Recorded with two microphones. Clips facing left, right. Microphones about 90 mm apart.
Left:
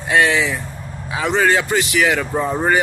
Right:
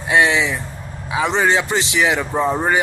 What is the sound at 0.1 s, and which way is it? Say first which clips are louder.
Speech: even; 15° right (ahead or behind).